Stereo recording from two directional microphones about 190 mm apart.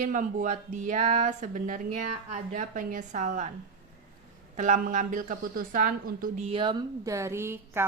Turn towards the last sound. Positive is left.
turn(degrees=-15)  # may be behind; listen again after turning